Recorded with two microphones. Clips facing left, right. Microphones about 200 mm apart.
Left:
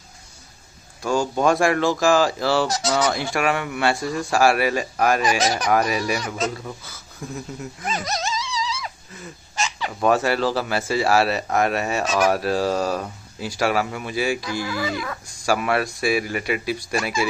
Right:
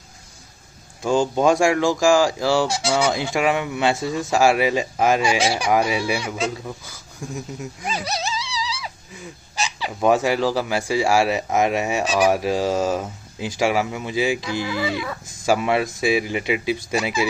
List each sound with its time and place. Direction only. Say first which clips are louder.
1.0 s speech: right 2 dB; 20° right (ahead or behind)
4.0 s a man's voice: right 1 dB; centre (ahead or behind)
4.3 s speech: right 1 dB; 15° right (ahead or behind)
9.7 s speech: right 2 dB; 15° right (ahead or behind)
15.4 s speech: right 2 dB; 20° right (ahead or behind)